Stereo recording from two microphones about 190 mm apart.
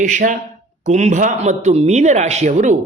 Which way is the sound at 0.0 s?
40° right (ahead or behind).